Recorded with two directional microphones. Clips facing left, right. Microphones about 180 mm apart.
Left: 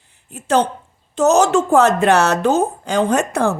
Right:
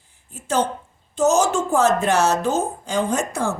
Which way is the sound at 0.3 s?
65° left (ahead or behind).